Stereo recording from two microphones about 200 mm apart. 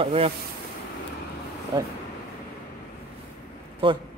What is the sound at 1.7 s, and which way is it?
Speech, 20° right (ahead or behind).